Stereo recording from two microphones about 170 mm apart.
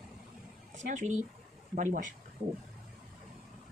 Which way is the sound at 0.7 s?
45° right (ahead or behind).